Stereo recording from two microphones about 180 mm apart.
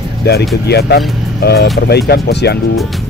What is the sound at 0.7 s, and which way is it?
Speech, 65° left (ahead or behind).